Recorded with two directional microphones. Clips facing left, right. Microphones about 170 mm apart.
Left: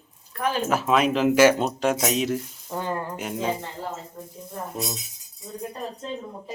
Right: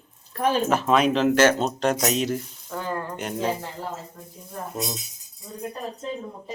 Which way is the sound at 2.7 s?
20° left (ahead or behind).